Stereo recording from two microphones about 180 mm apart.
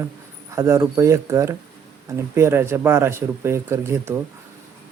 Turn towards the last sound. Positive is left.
turn(degrees=-15)  # may be behind; listen again after turning